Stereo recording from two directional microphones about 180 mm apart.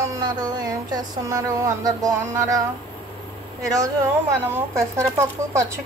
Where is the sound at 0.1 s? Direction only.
20° right (ahead or behind).